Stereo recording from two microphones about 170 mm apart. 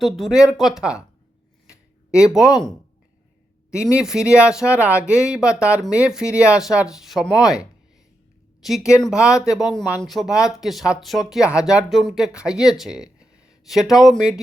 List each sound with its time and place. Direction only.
0.0 s speech: centre (ahead or behind)
1.6 s a sound: 5° right (ahead or behind)
3.9 s speech: 5° right (ahead or behind)